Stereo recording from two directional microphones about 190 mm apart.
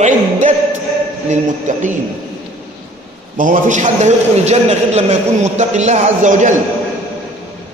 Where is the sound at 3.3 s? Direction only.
45° right (ahead or behind).